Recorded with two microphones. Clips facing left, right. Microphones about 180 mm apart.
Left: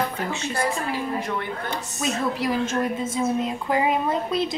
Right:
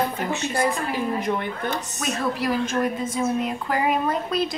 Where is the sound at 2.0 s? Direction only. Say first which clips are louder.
Left 2 dB; 20° left (ahead or behind).